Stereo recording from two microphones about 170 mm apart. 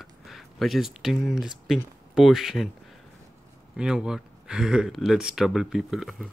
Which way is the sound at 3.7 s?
5° right (ahead or behind).